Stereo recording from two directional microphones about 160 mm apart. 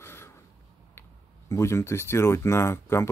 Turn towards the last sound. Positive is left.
turn(degrees=15)  # may be behind; listen again after turning